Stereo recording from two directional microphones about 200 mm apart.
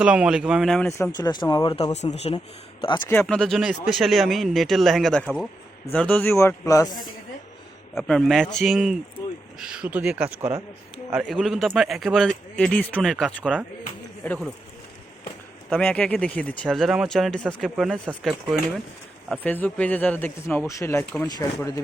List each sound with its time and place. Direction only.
0.0 s speech: 5° right (ahead or behind)
0.9 s speech: 15° left (ahead or behind); by 2.4 s 30° left (ahead or behind)
3.1 s speech: 5° left (ahead or behind)
7.9 s speech: centre (ahead or behind)
15.7 s speech: 5° left (ahead or behind)
19.3 s speech: 10° left (ahead or behind)